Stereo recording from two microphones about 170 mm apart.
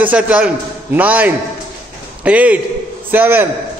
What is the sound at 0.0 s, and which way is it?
A man's voice, 10° right (ahead or behind).